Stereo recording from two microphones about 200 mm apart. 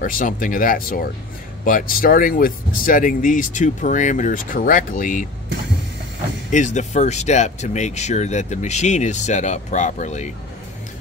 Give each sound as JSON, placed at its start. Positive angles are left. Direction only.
{"t": 0.0, "sound": "speech", "side_deg": 45}
{"t": 6.5, "sound": "speech", "side_deg": 35}